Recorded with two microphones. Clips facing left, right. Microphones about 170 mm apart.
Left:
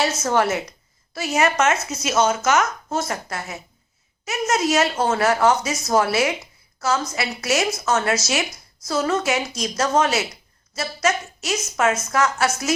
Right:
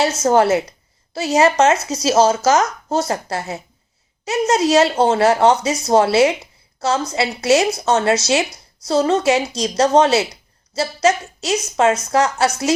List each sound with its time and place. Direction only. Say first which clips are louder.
0.0 s speech: right 6 dB; 30° right (ahead or behind)